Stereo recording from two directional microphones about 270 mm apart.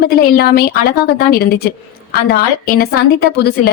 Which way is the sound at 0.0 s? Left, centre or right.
Left.